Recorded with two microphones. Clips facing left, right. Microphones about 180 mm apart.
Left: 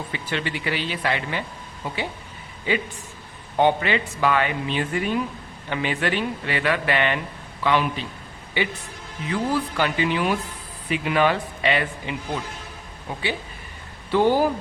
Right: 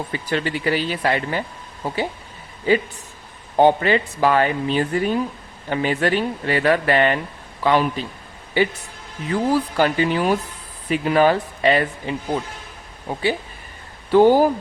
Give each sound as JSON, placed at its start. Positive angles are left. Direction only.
{"t": 0.1, "sound": "speech", "side_deg": -40}